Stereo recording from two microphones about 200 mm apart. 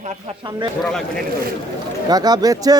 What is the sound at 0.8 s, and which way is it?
Speech, 5° left (ahead or behind).